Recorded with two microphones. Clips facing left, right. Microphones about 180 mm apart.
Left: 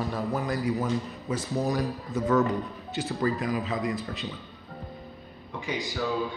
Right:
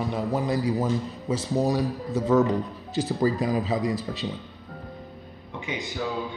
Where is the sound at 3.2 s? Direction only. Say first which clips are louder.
Right 3 dB; 30° right (ahead or behind).